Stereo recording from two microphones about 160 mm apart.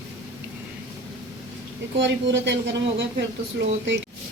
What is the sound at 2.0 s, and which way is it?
Speech, 90° right.